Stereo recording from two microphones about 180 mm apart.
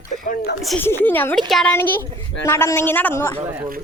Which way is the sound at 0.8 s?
10° left (ahead or behind).